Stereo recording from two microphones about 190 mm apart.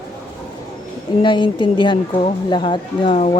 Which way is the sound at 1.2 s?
25° left (ahead or behind).